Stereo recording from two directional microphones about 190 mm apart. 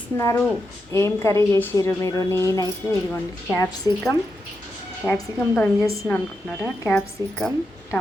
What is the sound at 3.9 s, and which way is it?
Speech, 15° right (ahead or behind).